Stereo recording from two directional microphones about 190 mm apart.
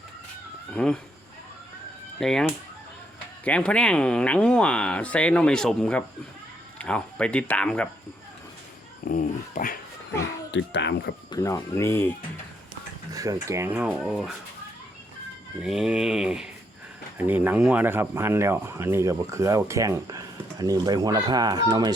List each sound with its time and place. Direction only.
0.7 s speech: 5° left (ahead or behind)
2.1 s fowl: 5° left (ahead or behind)
3.4 s speech: 5° left (ahead or behind)
9.0 s speech: 45° left (ahead or behind)
10.5 s a child's voice: 70° left (ahead or behind)
11.3 s speech: 15° left (ahead or behind)
13.1 s speech: 15° right (ahead or behind)
15.6 s speech: 5° right (ahead or behind); by 21.9 s 20° right (ahead or behind)